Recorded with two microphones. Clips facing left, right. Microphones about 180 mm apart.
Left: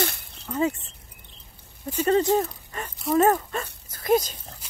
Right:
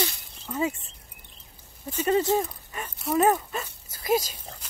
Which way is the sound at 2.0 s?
10° right (ahead or behind).